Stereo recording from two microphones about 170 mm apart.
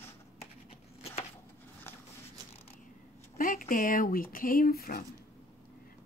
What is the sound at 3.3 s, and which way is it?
Speech, 55° left (ahead or behind).